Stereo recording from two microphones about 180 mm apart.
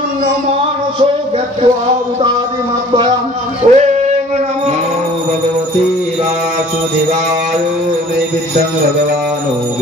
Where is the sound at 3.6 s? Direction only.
30° right (ahead or behind).